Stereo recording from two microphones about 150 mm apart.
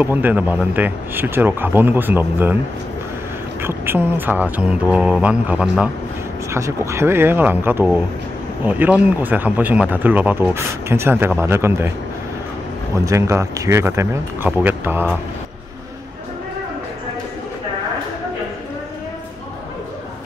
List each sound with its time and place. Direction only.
0.0 s speech: 10° right (ahead or behind)
3.6 s speech: 15° right (ahead or behind)
6.5 s speech: 20° right (ahead or behind)
13.0 s speech: 20° right (ahead or behind)